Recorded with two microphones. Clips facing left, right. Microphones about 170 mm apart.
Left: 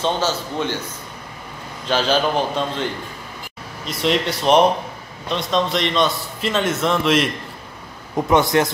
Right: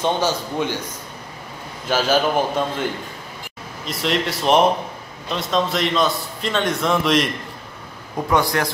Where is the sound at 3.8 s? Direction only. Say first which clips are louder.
Left 2 dB; centre (ahead or behind).